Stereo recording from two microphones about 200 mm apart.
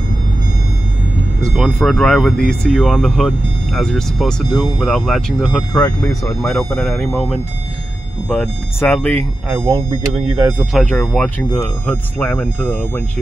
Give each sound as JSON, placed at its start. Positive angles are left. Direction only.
{"t": 1.4, "sound": "speech", "side_deg": 0}
{"t": 5.7, "sound": "speech", "side_deg": 15}
{"t": 6.4, "sound": "speech", "side_deg": 0}
{"t": 10.6, "sound": "speech", "side_deg": 0}